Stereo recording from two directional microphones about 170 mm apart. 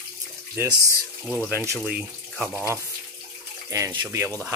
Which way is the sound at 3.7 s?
25° right (ahead or behind).